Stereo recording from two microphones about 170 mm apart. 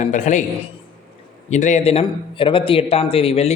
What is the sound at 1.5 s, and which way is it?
A man's voice, 45° left (ahead or behind).